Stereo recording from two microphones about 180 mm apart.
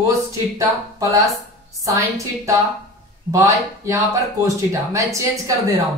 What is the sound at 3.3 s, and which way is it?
A woman's voice, 15° right (ahead or behind).